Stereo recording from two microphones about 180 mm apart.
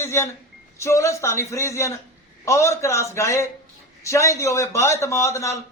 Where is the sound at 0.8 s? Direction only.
15° left (ahead or behind).